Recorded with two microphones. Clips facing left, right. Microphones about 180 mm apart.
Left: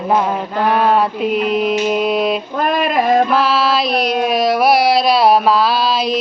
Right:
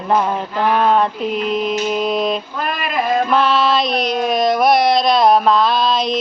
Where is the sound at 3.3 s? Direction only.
5° left (ahead or behind).